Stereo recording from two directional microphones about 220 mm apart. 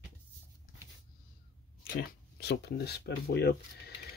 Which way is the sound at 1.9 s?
50° left (ahead or behind).